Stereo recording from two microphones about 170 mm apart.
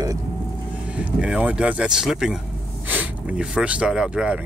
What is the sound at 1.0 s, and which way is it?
Speech, 5° right (ahead or behind).